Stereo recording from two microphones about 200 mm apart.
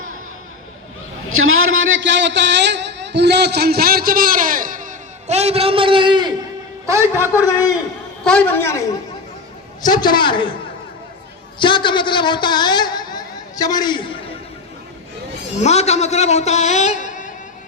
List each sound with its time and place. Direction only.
1.3 s a man's voice: 90° right; by 7.3 s 10° right (ahead or behind)
7.3 s a man's voice: 15° left (ahead or behind)
8.2 s a man's voice: 5° left (ahead or behind)
9.8 s a man's voice: 20° left (ahead or behind)
11.6 s a woman's voice: 25° left (ahead or behind)
15.6 s a man's voice: 35° left (ahead or behind)